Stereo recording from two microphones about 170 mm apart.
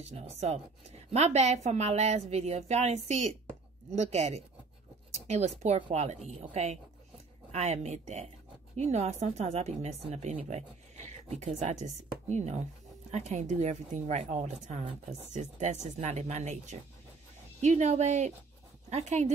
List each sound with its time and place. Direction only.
0.1 s a woman's voice: 40° right (ahead or behind)